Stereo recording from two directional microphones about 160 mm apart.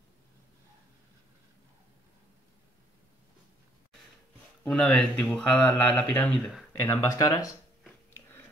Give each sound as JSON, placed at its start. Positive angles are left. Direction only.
{"t": 4.6, "sound": "speech", "side_deg": 5}